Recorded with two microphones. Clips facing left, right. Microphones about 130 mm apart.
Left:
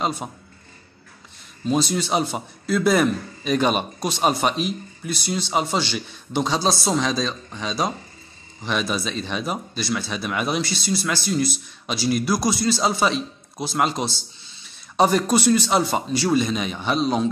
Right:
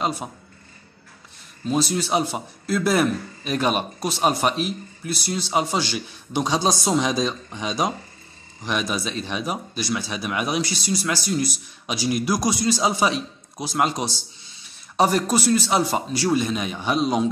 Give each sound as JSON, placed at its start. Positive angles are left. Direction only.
{"t": 0.0, "sound": "a man's voice", "side_deg": -5}
{"t": 1.7, "sound": "a man's voice", "side_deg": -5}
{"t": 8.9, "sound": "speech", "side_deg": -10}